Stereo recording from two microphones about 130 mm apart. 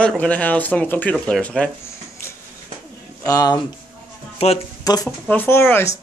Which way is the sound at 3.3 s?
30° left (ahead or behind).